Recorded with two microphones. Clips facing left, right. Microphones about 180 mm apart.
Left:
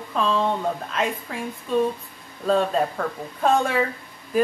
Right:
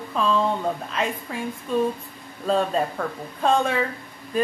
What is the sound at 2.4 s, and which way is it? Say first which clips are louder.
Speech: left 1 dB; centre (ahead or behind).